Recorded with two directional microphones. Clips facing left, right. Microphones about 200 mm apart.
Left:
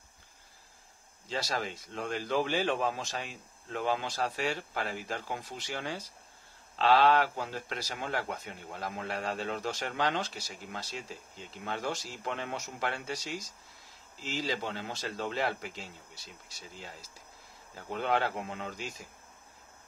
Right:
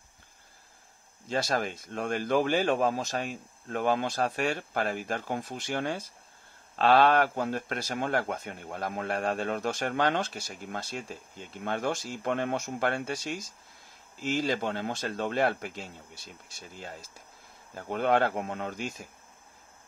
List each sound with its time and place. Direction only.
1.3 s speech: 50° right (ahead or behind)